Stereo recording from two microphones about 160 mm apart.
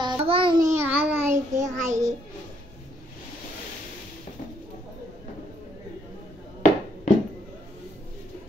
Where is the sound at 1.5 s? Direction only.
45° right (ahead or behind).